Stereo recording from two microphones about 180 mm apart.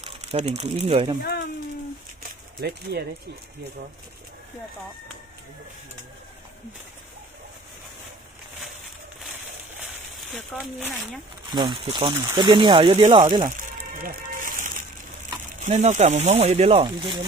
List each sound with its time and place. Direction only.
0.0 s speech: 35° right (ahead or behind)
2.6 s speech: 65° right (ahead or behind)
10.3 s speech: centre (ahead or behind)
11.5 s speech: 25° right (ahead or behind)
13.6 s music: 50° right (ahead or behind)
15.6 s speech: 40° right (ahead or behind)